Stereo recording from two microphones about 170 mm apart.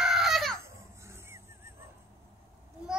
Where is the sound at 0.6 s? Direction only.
15° right (ahead or behind).